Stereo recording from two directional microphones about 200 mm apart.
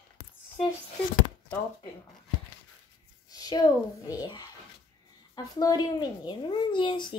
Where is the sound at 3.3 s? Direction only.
20° left (ahead or behind).